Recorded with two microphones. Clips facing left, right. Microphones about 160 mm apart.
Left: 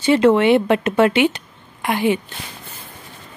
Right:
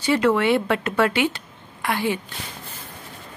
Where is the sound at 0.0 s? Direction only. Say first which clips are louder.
Left 6 dB; 20° left (ahead or behind).